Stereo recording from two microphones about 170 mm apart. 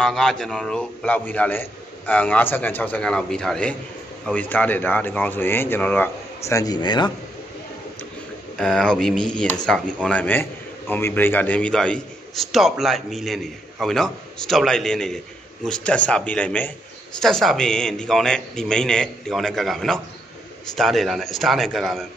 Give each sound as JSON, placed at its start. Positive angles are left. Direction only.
{"t": 0.0, "sound": "a man's voice", "side_deg": 5}
{"t": 6.5, "sound": "speech", "side_deg": 20}
{"t": 8.5, "sound": "a man's voice", "side_deg": 5}